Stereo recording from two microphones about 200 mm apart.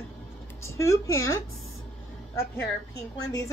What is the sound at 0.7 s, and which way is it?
Speech, 15° left (ahead or behind).